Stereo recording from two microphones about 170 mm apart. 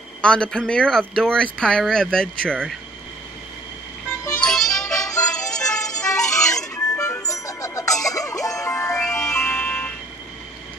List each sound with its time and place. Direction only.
0.2 s speech: 5° left (ahead or behind)
4.4 s music: 5° left (ahead or behind)
4.9 s music: 20° left (ahead or behind)
6.4 s music: 5° left (ahead or behind)
7.2 s music: 20° left (ahead or behind)
9.0 s music: 5° left (ahead or behind)